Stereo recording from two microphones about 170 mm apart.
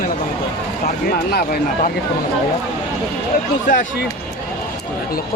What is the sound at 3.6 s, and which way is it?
Speech, 55° left (ahead or behind).